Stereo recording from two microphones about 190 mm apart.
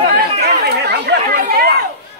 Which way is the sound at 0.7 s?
55° right (ahead or behind).